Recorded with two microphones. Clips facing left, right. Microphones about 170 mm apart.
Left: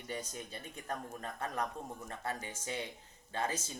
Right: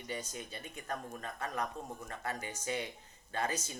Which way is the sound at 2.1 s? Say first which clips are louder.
Even; 25° left (ahead or behind).